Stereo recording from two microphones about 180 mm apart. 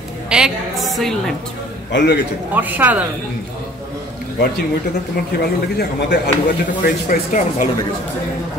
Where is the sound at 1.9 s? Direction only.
70° left (ahead or behind).